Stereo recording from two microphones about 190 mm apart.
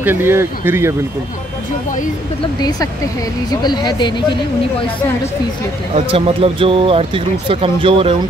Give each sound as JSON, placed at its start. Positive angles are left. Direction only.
{"t": 0.0, "sound": "speech", "side_deg": -10}
{"t": 3.6, "sound": "speech", "side_deg": 20}
{"t": 5.9, "sound": "speech", "side_deg": -30}